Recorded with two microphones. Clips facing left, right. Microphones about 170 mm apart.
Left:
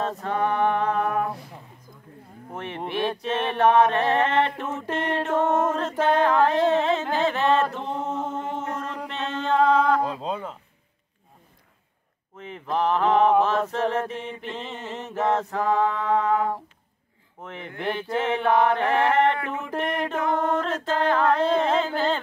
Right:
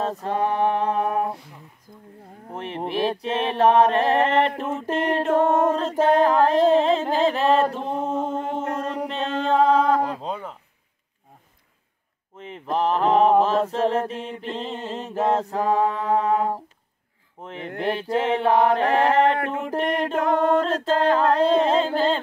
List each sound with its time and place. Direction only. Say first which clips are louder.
0.0 s mantra: right 1 dB; 35° right (ahead or behind)
2.5 s mantra: right 2 dB; 35° right (ahead or behind)
8.3 s a sound: right 3 dB; 30° right (ahead or behind)
12.4 s mantra: right 1 dB; 30° right (ahead or behind)